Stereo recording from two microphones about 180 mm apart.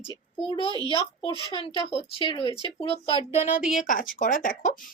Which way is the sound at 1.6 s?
30° left (ahead or behind).